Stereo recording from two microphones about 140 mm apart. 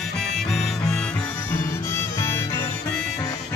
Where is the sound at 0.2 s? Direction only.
Centre (ahead or behind).